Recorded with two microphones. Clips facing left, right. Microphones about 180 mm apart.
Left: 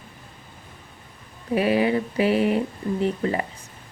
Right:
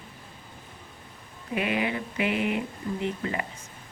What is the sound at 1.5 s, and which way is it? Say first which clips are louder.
Speech: left 8 dB; 35° left (ahead or behind).